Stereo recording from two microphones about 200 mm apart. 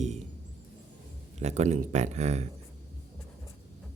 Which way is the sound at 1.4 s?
35° right (ahead or behind).